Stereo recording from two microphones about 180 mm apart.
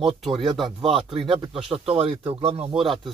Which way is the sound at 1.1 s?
25° right (ahead or behind).